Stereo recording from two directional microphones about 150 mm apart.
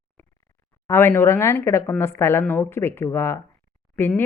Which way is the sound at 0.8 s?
15° left (ahead or behind).